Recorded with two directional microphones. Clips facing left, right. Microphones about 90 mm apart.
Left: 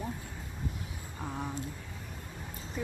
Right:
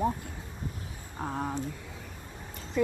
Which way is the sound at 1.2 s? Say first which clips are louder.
Right 5 dB; 40° right (ahead or behind).